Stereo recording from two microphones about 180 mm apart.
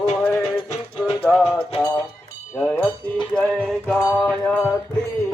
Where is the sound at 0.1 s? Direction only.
5° left (ahead or behind).